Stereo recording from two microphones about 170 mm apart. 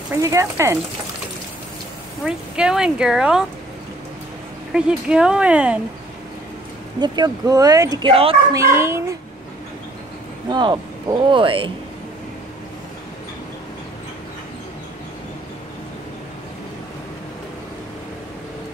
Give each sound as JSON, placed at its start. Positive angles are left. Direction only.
{"t": 0.1, "sound": "speech", "side_deg": -20}
{"t": 2.2, "sound": "speech", "side_deg": -5}
{"t": 4.7, "sound": "speech", "side_deg": -5}
{"t": 7.0, "sound": "speech", "side_deg": -25}
{"t": 8.5, "sound": "speech", "side_deg": -15}
{"t": 10.5, "sound": "speech", "side_deg": -25}